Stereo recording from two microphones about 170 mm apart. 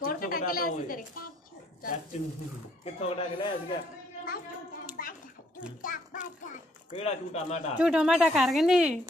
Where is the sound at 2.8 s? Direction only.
35° left (ahead or behind).